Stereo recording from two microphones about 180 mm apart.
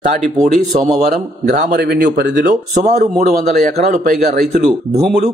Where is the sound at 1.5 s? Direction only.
55° right (ahead or behind); by 2.5 s 75° right (ahead or behind).